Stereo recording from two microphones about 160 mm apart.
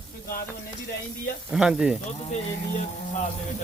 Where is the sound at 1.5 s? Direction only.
5° right (ahead or behind).